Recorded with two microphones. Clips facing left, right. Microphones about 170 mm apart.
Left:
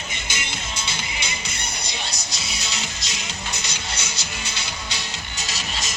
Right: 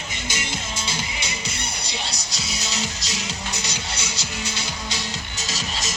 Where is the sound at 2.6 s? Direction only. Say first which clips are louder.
Right 3 dB; 40° right (ahead or behind).